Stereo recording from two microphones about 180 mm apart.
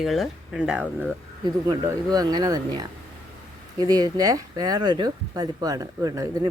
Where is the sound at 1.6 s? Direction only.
20° right (ahead or behind).